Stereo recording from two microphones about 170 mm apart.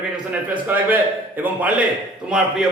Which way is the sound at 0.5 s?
10° right (ahead or behind).